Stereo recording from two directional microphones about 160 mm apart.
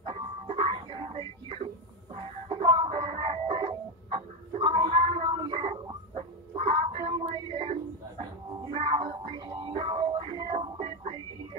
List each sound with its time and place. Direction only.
0.0 s music: 40° right (ahead or behind)
4.5 s a sound: 40° right (ahead or behind)
8.7 s music: 40° right (ahead or behind)